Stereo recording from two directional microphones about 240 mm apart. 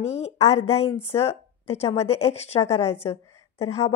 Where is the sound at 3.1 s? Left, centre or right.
Left.